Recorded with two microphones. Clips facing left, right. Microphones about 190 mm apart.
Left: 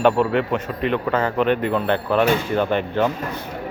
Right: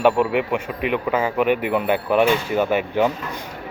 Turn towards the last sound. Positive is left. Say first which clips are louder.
# right 1 dB
turn(degrees=-10)  # may be behind; listen again after turning